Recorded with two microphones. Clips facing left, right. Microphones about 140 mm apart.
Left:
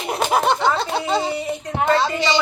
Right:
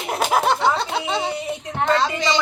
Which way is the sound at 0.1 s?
Centre (ahead or behind).